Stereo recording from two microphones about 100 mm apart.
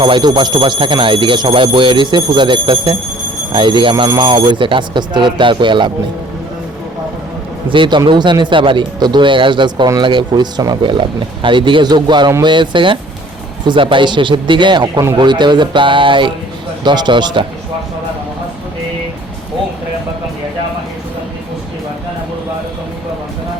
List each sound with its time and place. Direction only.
0.0 s speech: 50° right (ahead or behind)
7.7 s speech: 55° right (ahead or behind)
11.4 s speech: 55° right (ahead or behind)